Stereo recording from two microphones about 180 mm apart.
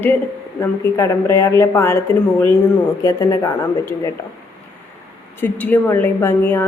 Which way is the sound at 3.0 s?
20° left (ahead or behind).